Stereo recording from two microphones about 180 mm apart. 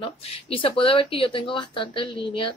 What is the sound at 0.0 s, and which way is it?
A woman's voice, 30° left (ahead or behind).